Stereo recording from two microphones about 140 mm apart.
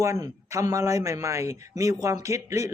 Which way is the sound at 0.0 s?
20° right (ahead or behind).